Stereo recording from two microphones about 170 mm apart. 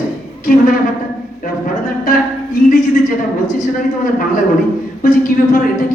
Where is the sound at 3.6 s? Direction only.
50° left (ahead or behind).